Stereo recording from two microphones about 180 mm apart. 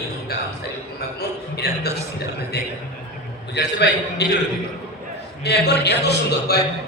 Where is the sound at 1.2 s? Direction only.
60° left (ahead or behind).